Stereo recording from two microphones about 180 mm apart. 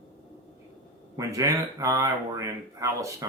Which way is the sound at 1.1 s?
20° right (ahead or behind).